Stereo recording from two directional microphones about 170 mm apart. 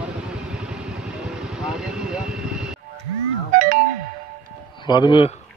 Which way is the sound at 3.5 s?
55° right (ahead or behind).